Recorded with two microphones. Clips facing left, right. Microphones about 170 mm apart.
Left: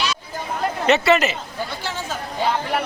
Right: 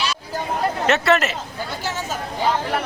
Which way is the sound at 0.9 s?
Centre (ahead or behind).